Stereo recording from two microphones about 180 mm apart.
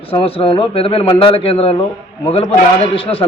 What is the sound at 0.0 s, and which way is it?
A man's voice, 30° left (ahead or behind).